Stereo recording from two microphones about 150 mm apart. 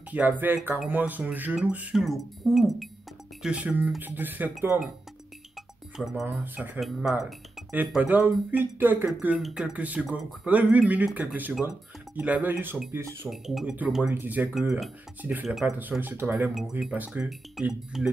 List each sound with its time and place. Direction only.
0.1 s speech: 10° right (ahead or behind)
5.9 s speech: 5° right (ahead or behind)
13.3 s speech: centre (ahead or behind)
15.8 s speech: 10° right (ahead or behind)